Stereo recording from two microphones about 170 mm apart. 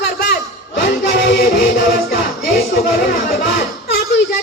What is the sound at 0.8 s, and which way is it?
Music, 65° left (ahead or behind).